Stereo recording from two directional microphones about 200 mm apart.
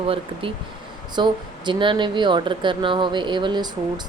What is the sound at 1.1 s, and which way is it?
Speech, 20° right (ahead or behind).